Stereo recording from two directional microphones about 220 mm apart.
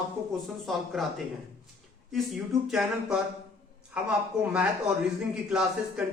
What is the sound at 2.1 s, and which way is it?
Speech, centre (ahead or behind).